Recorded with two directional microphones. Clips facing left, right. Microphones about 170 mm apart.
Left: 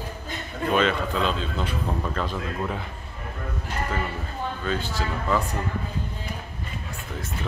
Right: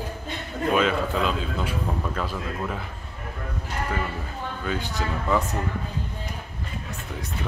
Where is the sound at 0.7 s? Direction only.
5° right (ahead or behind).